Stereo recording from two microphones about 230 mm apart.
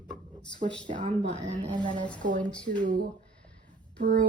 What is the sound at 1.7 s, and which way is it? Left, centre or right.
Speech, right.